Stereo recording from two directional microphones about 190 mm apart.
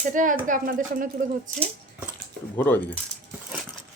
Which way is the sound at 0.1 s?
45° right (ahead or behind).